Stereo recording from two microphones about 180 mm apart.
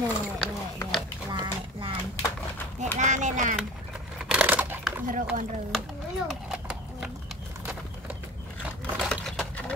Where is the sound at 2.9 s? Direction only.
40° right (ahead or behind).